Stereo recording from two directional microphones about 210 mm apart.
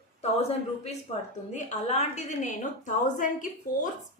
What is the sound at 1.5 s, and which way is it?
A woman's voice, 35° left (ahead or behind).